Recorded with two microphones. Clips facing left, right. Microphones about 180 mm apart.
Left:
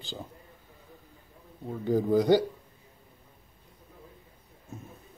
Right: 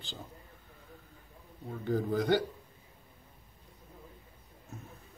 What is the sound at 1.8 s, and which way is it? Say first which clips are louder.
Speech: left 6 dB; 15° left (ahead or behind).